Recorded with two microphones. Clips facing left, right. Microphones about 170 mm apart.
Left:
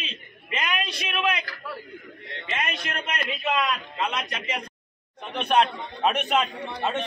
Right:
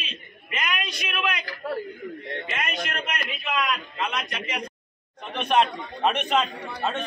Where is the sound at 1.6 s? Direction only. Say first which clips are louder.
Right 11 dB; 45° right (ahead or behind).